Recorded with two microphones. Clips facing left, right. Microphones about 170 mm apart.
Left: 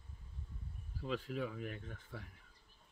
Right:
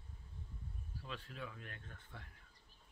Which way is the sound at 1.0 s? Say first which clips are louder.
Left 10 dB; 90° left.